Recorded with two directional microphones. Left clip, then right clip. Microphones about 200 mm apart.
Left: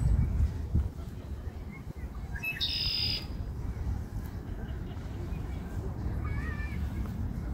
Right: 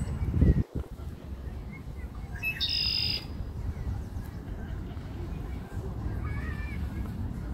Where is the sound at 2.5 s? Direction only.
45° right (ahead or behind).